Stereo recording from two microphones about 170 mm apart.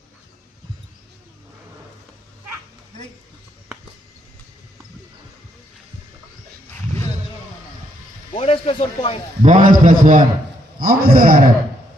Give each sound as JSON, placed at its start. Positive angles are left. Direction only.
{"t": 8.3, "sound": "speech", "side_deg": 35}
{"t": 9.4, "sound": "a man's voice", "side_deg": -50}